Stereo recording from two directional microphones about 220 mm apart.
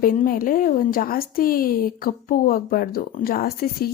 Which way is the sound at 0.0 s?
40° left (ahead or behind).